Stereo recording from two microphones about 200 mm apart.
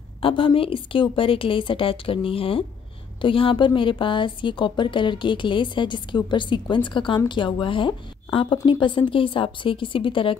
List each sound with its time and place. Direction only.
0.2 s a woman's voice: 25° left (ahead or behind)